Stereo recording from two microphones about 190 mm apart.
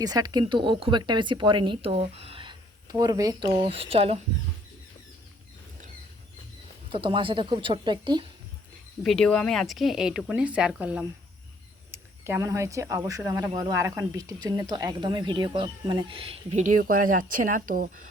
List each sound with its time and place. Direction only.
0.0 s speech: 20° right (ahead or behind)
6.9 s speech: 25° right (ahead or behind)
9.0 s speech: 5° left (ahead or behind); by 18.0 s 45° right (ahead or behind)